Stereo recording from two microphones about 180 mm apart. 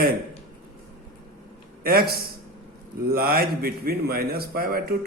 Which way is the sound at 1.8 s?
60° right (ahead or behind).